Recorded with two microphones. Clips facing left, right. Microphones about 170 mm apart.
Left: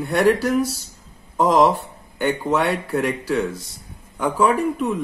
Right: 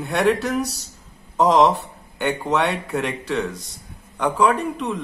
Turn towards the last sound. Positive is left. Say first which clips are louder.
# left 1 dB
turn(degrees=5)  # may be behind; listen again after turning